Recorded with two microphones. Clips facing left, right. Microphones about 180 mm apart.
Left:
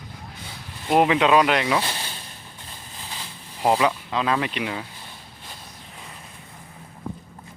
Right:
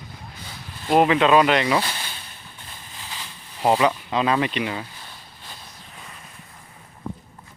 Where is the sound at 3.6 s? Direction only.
Centre (ahead or behind).